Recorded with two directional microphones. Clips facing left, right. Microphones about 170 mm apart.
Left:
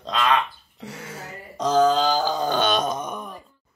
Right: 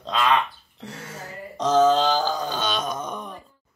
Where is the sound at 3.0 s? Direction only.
5° left (ahead or behind).